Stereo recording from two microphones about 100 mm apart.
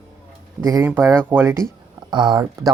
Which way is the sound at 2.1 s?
50° right (ahead or behind).